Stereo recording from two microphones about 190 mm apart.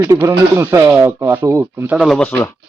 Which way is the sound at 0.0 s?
15° right (ahead or behind).